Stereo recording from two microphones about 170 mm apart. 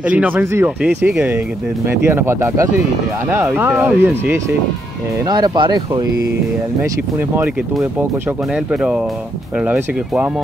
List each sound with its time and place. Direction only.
0.0 s speech: 5° right (ahead or behind)
5.3 s speech: 25° right (ahead or behind)
9.6 s speech: 10° right (ahead or behind)